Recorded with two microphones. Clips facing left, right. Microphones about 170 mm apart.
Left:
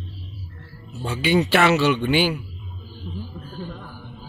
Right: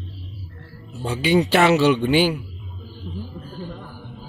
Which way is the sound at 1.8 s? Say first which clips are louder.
Right 3 dB; 35° right (ahead or behind).